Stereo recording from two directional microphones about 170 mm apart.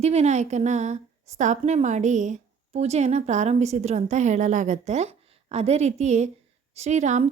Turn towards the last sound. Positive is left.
turn(degrees=-45)  # may be behind; listen again after turning